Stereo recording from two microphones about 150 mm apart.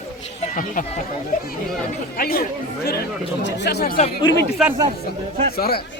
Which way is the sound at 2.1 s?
85° left.